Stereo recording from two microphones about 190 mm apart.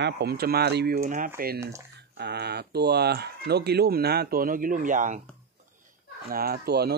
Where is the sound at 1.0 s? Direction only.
45° right (ahead or behind).